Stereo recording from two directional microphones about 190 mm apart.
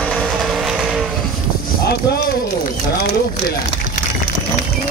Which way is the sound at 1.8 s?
55° left (ahead or behind).